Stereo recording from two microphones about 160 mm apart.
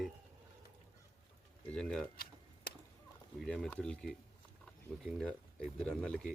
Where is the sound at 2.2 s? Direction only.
80° left.